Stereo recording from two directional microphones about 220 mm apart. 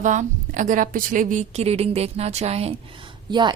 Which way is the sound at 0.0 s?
35° right (ahead or behind).